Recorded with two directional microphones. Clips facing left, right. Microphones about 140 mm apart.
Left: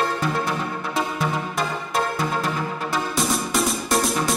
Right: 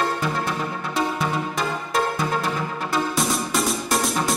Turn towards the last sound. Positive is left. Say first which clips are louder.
# left 1 dB
turn(degrees=0)  # may be behind; listen again after turning